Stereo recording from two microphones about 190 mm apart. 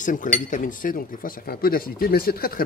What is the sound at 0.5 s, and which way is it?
A man's voice, 45° left (ahead or behind).